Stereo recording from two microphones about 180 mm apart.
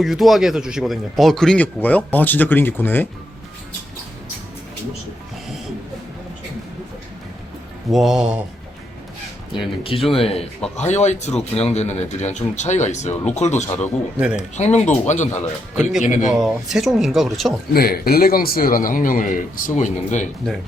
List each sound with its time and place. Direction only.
0.0 s a man's voice: centre (ahead or behind)
7.9 s speech: centre (ahead or behind)
9.6 s speech: 30° left (ahead or behind)
15.7 s speech: 5° right (ahead or behind)
16.0 s a man's voice: 45° left (ahead or behind)
16.3 s speech: 5° right (ahead or behind)
17.7 s a man's voice: 55° left (ahead or behind); by 20.2 s 40° left (ahead or behind)